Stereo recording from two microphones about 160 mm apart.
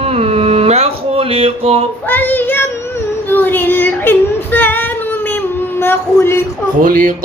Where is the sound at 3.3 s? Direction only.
10° left (ahead or behind).